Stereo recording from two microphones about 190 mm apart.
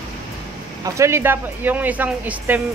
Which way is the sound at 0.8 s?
15° right (ahead or behind).